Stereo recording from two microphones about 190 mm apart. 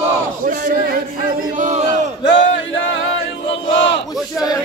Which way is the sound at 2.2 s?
80° left.